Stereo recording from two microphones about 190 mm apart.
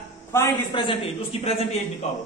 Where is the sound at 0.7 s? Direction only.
25° left (ahead or behind).